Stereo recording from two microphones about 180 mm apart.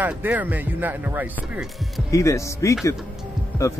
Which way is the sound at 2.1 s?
15° left (ahead or behind).